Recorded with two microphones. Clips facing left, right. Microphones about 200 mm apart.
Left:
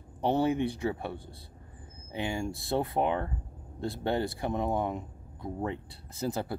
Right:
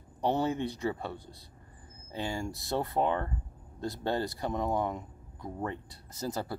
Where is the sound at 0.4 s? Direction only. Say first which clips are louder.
Left 3 dB; 10° left (ahead or behind).